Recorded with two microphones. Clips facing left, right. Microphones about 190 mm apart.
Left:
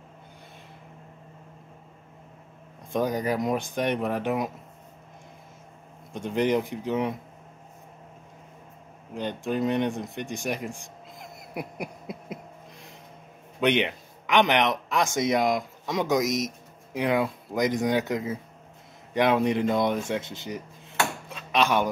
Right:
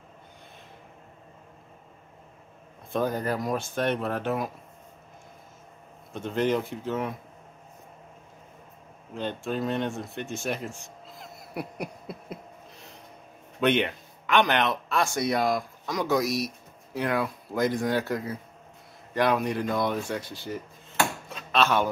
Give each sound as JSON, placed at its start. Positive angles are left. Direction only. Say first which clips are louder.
{"t": 2.9, "sound": "speech", "louder": "left 1 dB", "side_deg": 15}
{"t": 6.1, "sound": "speech", "louder": "left 2 dB", "side_deg": 15}
{"t": 9.1, "sound": "speech", "louder": "left 2 dB", "side_deg": 15}
{"t": 13.6, "sound": "speech", "louder": "even", "side_deg": 15}
{"t": 21.5, "sound": "a sound", "louder": "even", "side_deg": 15}